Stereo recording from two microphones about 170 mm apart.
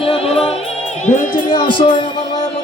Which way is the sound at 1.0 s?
45° left (ahead or behind).